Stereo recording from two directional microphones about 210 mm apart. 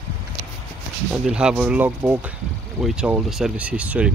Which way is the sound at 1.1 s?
5° right (ahead or behind).